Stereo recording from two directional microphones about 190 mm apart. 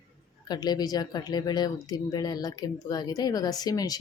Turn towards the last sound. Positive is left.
turn(degrees=20)  # may be behind; listen again after turning